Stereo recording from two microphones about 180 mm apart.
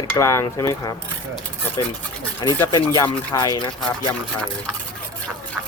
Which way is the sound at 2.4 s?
25° left (ahead or behind).